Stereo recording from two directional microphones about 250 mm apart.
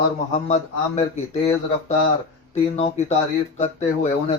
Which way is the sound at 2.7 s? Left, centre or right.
Left.